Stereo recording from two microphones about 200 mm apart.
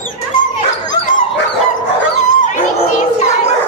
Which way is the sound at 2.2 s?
40° left (ahead or behind).